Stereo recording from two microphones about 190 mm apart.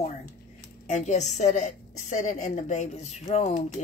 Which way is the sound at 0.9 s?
40° left (ahead or behind).